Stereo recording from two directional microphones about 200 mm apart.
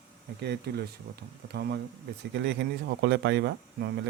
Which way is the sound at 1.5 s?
55° right (ahead or behind).